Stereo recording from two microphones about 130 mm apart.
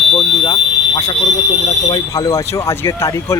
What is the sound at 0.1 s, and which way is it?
Fire alarm, 40° left (ahead or behind).